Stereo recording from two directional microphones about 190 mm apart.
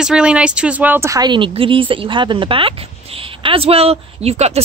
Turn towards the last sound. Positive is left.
turn(degrees=-35)  # may be behind; listen again after turning